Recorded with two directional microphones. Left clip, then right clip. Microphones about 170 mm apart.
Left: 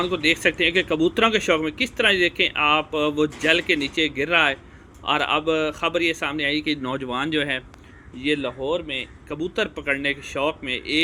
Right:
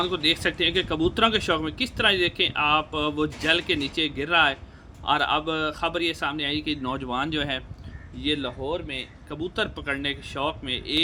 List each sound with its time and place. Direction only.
0.0 s speech: 5° left (ahead or behind)